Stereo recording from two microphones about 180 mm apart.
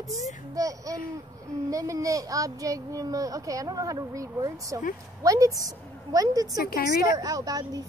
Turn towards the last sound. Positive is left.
turn(degrees=-20)  # may be behind; listen again after turning